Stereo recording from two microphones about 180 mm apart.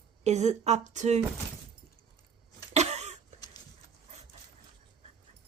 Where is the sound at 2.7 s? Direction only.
40° right (ahead or behind).